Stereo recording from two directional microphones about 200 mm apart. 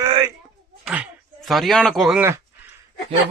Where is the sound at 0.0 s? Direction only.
20° right (ahead or behind).